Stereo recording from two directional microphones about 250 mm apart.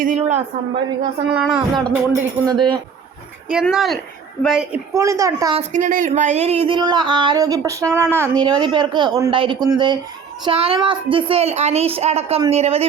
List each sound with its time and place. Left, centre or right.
0.0 s speech: right
1.3 s speech: centre
2.5 s speech: centre
3.5 s speech: centre
5.5 s speech: right